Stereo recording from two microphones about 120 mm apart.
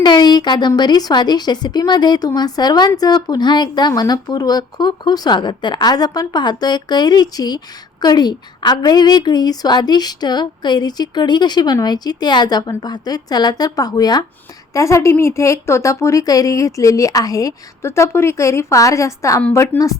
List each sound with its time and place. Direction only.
0.0 s a woman's voice: 35° left (ahead or behind)
19.7 s speech: 15° left (ahead or behind)